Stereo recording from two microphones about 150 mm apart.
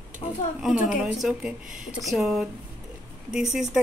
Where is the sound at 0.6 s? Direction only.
5° right (ahead or behind).